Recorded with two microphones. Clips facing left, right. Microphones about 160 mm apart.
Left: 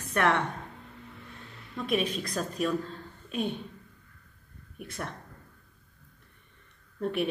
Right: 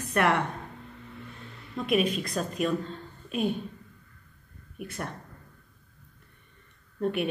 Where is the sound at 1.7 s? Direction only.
Centre (ahead or behind).